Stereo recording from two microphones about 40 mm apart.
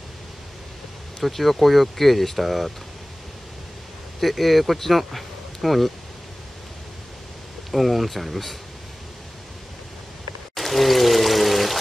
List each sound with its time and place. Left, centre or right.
1.2 s speech: centre
4.2 s speech: centre
7.7 s speech: centre
10.5 s pour: centre